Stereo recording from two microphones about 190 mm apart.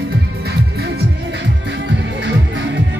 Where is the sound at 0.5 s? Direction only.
60° right (ahead or behind).